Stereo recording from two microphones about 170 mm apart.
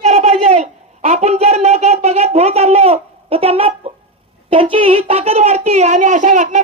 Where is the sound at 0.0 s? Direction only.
40° right (ahead or behind).